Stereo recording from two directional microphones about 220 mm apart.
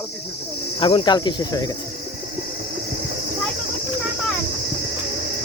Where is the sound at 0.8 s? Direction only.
25° left (ahead or behind).